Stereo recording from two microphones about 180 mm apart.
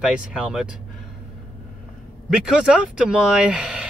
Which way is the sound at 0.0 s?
5° right (ahead or behind).